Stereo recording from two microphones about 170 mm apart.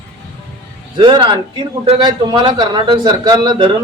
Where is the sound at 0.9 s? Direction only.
30° right (ahead or behind).